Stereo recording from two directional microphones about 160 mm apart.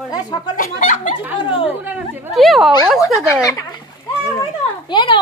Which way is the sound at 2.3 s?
Centre (ahead or behind).